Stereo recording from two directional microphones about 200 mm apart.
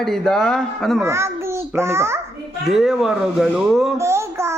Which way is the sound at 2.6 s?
Centre (ahead or behind).